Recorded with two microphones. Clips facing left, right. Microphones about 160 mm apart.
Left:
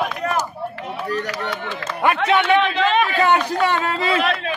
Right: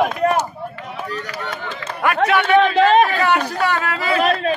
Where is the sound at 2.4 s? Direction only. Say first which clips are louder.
Right 4 dB; 45° right (ahead or behind).